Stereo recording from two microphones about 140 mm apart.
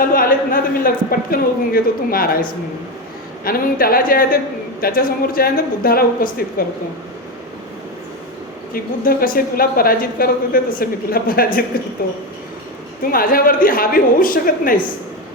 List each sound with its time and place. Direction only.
0.0 s speech: 90° left
8.7 s speech: 90° left
13.1 s speech: 90° left